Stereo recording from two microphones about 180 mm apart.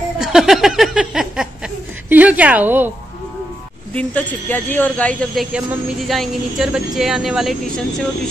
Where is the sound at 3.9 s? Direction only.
5° left (ahead or behind).